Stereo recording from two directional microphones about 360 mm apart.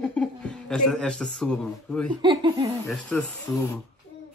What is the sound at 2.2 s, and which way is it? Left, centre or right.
Speech, centre.